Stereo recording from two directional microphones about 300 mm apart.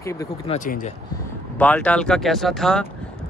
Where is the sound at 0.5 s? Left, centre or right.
Left.